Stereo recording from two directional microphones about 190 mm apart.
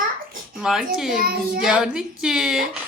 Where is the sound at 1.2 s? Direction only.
50° right (ahead or behind).